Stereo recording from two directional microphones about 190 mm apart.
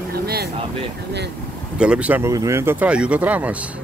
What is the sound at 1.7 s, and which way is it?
Speech, 5° right (ahead or behind).